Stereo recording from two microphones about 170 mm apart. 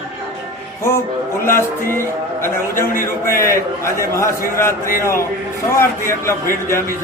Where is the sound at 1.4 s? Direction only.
15° left (ahead or behind).